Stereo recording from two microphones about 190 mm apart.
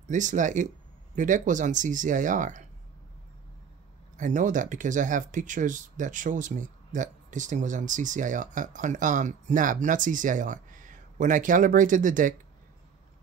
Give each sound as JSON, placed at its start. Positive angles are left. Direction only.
{"t": 0.1, "sound": "speech", "side_deg": -40}
{"t": 4.2, "sound": "speech", "side_deg": -40}